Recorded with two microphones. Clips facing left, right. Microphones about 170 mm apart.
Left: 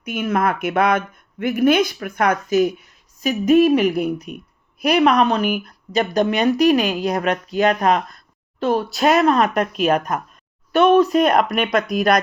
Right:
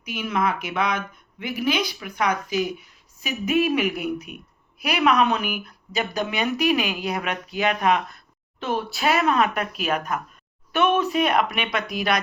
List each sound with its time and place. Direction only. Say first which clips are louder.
0.0 s a woman's voice: left 5 dB; 50° left (ahead or behind)